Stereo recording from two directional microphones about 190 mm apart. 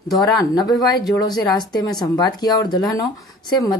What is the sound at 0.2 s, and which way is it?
A woman's voice, 20° left (ahead or behind).